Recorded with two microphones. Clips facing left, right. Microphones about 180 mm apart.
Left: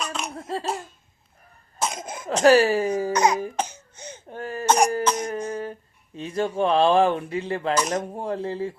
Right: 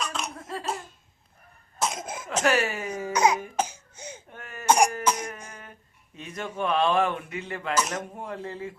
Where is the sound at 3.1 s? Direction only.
5° right (ahead or behind).